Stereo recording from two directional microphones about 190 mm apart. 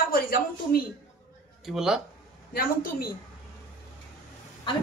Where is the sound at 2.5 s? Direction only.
50° left (ahead or behind).